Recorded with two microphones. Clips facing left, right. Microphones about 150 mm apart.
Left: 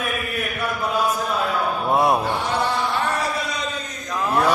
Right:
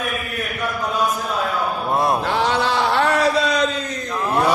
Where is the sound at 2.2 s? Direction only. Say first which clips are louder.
Right 3 dB; 90° right.